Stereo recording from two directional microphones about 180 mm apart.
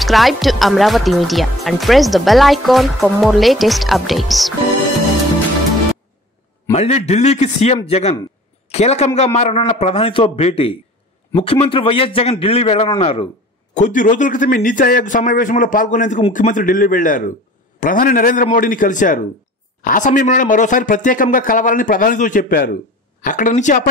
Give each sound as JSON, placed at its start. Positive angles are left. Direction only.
{"t": 0.0, "sound": "speech", "side_deg": 0}
{"t": 6.7, "sound": "a man's voice", "side_deg": 35}
{"t": 13.7, "sound": "speech", "side_deg": 45}